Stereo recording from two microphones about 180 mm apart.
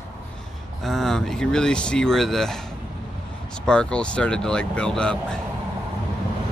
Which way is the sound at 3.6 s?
5° left (ahead or behind).